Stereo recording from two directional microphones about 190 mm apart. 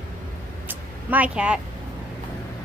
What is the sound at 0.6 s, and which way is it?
Vehicle, 10° right (ahead or behind).